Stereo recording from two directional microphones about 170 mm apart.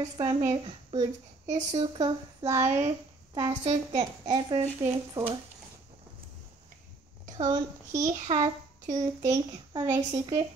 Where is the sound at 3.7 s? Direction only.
25° right (ahead or behind).